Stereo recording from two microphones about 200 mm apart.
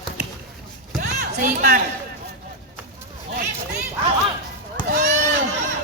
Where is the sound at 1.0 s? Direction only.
45° right (ahead or behind).